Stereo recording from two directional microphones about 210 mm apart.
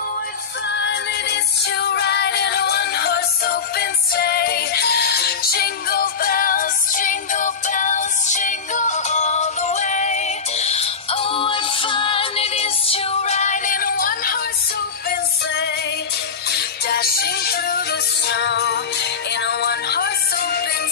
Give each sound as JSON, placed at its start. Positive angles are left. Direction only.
{"t": 0.7, "sound": "music", "side_deg": 55}